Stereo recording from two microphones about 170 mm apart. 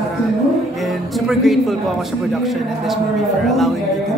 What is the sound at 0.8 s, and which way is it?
Speech, centre (ahead or behind).